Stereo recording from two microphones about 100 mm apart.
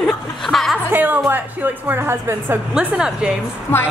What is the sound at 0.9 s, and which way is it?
Speech, 20° right (ahead or behind).